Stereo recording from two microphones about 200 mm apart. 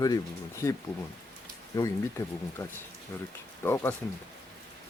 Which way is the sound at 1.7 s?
15° left (ahead or behind).